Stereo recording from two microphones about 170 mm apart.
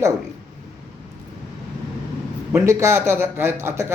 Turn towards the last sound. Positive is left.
turn(degrees=-15)  # may be behind; listen again after turning